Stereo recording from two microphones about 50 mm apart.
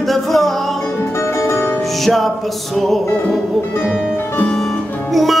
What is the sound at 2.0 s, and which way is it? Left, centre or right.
Music, centre.